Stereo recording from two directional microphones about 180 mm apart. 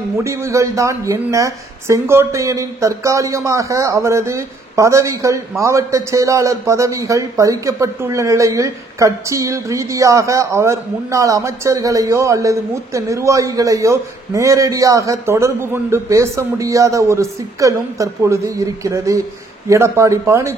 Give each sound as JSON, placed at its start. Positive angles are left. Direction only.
{"t": 0.2, "sound": "a man's voice", "side_deg": -15}